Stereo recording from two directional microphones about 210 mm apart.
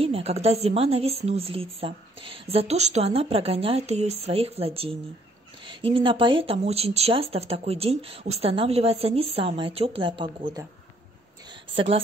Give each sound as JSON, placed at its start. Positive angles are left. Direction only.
{"t": 0.0, "sound": "speech", "side_deg": -30}
{"t": 11.7, "sound": "speech", "side_deg": -25}